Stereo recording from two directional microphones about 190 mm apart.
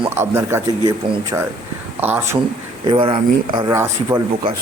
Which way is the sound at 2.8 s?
25° right (ahead or behind).